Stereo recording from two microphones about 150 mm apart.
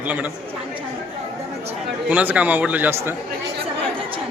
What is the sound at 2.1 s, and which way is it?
A man's voice, 10° right (ahead or behind).